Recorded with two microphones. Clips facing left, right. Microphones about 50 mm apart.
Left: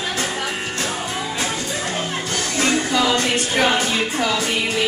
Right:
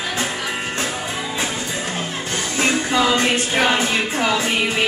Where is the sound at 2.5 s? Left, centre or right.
Right.